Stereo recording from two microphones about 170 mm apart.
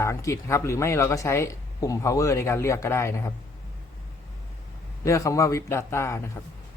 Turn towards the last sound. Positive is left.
turn(degrees=15)  # may be behind; listen again after turning